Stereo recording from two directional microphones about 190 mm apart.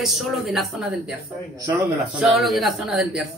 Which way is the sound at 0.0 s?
Centre (ahead or behind).